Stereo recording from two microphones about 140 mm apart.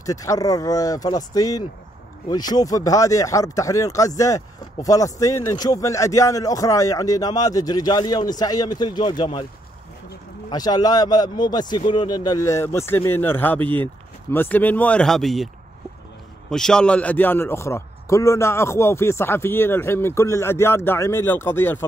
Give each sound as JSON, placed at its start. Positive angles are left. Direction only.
{"t": 0.0, "sound": "a man's voice", "side_deg": 25}
{"t": 10.5, "sound": "a man's voice", "side_deg": 30}